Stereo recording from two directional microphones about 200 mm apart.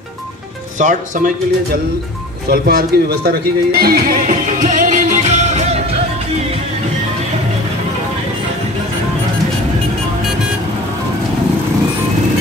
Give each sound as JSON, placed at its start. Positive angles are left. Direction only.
{"t": 0.7, "sound": "speech", "side_deg": -40}
{"t": 2.5, "sound": "speech", "side_deg": -50}